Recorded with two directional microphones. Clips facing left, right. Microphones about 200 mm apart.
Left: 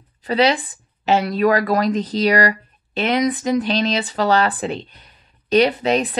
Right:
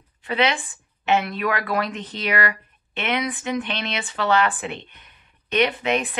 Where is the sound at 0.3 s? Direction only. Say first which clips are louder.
Left 5 dB; 35° left (ahead or behind).